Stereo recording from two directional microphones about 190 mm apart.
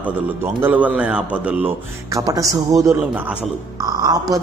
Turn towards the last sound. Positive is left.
turn(degrees=-20)  # may be behind; listen again after turning